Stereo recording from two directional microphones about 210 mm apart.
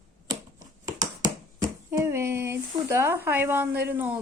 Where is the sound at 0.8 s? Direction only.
15° right (ahead or behind).